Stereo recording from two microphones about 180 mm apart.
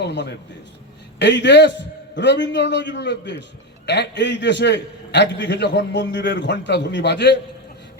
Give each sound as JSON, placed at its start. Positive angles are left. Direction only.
{"t": 0.0, "sound": "a man's voice", "side_deg": 70}